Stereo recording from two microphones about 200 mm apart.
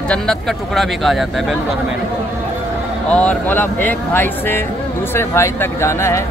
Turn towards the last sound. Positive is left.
turn(degrees=15)  # may be behind; listen again after turning